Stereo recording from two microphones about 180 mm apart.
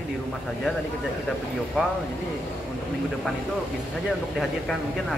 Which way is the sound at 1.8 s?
5° right (ahead or behind).